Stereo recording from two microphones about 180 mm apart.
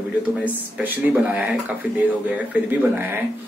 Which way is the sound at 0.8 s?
10° right (ahead or behind).